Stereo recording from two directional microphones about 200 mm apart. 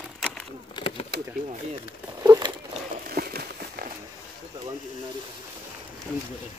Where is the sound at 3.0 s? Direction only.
50° right (ahead or behind).